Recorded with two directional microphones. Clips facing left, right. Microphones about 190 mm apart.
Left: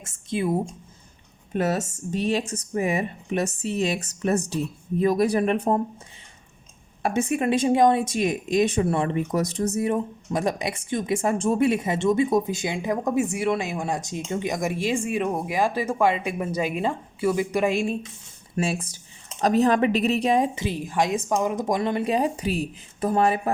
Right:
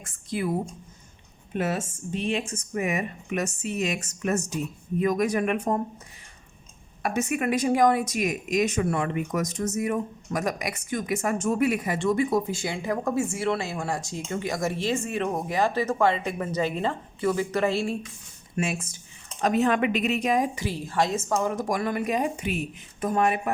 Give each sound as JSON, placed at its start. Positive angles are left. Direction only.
{"t": 0.0, "sound": "speech", "side_deg": 25}
{"t": 1.5, "sound": "speech", "side_deg": 40}
{"t": 7.0, "sound": "speech", "side_deg": 30}
{"t": 18.5, "sound": "speech", "side_deg": 35}